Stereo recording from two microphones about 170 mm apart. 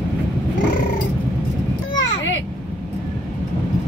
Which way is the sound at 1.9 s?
90° left.